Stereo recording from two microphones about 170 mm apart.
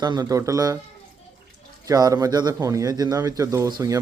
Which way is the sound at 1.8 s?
20° right (ahead or behind).